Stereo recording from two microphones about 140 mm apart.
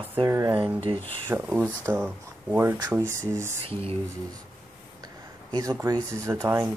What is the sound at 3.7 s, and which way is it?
Speech, 45° right (ahead or behind).